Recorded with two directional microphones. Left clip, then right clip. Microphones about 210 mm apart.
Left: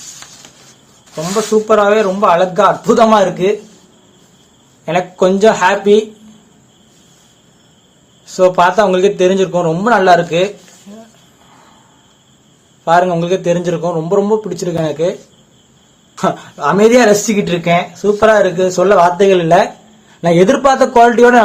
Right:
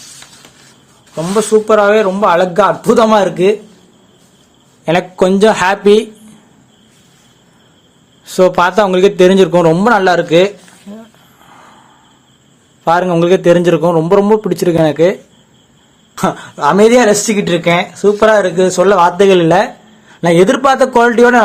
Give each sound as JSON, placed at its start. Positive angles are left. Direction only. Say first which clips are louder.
{"t": 1.1, "sound": "speech", "louder": "right 3 dB", "side_deg": -30}
{"t": 4.9, "sound": "speech", "louder": "right 1 dB", "side_deg": -40}
{"t": 8.2, "sound": "speech", "louder": "even", "side_deg": -30}
{"t": 12.8, "sound": "speech", "louder": "even", "side_deg": -30}
{"t": 16.1, "sound": "speech", "louder": "even", "side_deg": -30}